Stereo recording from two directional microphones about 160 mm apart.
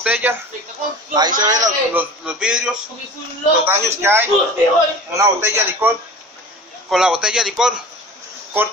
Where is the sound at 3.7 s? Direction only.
15° right (ahead or behind).